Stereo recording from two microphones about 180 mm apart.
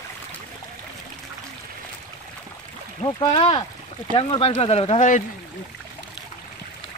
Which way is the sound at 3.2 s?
25° left (ahead or behind).